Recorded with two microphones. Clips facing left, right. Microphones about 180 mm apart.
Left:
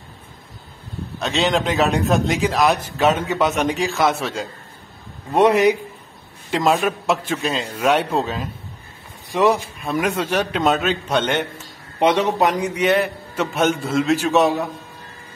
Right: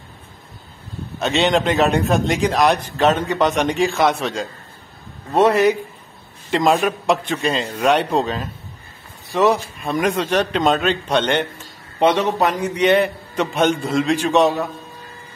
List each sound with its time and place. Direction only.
1.2 s a man's voice: centre (ahead or behind); by 5.8 s 15° left (ahead or behind)
6.5 s a man's voice: centre (ahead or behind)